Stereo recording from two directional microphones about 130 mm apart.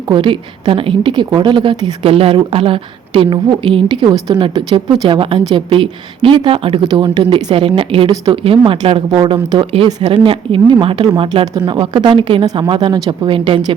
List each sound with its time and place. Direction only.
0.1 s a woman's voice: 40° right (ahead or behind)
2.0 s a woman's voice: 45° right (ahead or behind)